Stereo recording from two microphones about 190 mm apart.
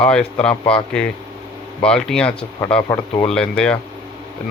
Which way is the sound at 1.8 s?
5° left (ahead or behind).